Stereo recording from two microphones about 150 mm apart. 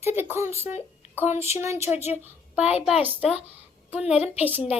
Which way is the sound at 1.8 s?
45° left (ahead or behind).